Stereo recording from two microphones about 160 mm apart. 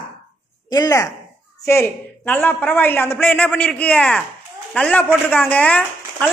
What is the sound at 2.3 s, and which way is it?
Speech, 10° left (ahead or behind).